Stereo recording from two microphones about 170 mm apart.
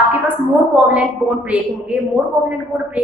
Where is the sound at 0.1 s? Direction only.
10° right (ahead or behind).